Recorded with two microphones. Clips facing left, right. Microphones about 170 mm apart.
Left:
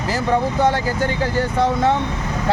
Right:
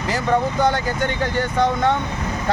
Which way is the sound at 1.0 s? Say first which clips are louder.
Left 2 dB; 30° left (ahead or behind).